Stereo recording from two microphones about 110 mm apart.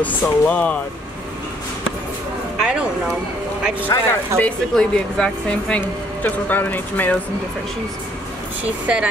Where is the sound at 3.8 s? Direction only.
20° left (ahead or behind).